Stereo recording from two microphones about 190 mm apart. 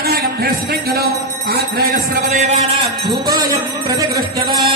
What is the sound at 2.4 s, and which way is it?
Speech, 35° right (ahead or behind).